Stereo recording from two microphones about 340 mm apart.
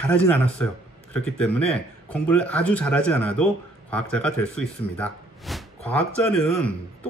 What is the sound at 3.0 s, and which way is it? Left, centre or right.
Speech, left.